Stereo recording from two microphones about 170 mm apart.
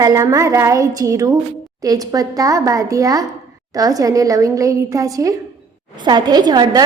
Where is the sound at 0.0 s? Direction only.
20° right (ahead or behind).